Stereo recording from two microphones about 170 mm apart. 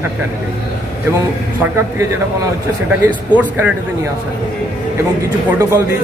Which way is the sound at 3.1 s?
10° right (ahead or behind).